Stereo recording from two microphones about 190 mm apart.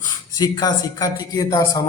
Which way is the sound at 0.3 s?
20° left (ahead or behind).